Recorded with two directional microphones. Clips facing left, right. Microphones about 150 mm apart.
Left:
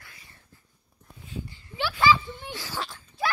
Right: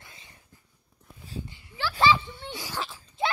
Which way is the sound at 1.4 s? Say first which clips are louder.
Left 2 dB; 15° right (ahead or behind).